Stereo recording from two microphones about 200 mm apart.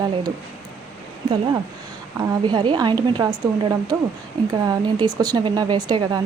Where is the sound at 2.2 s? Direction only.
20° right (ahead or behind).